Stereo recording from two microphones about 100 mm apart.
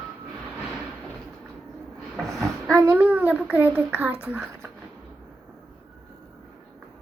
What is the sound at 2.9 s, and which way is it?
A child's voice, 15° right (ahead or behind).